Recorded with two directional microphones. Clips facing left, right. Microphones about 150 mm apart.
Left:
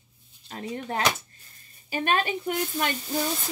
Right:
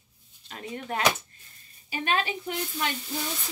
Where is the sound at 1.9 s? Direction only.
50° left (ahead or behind).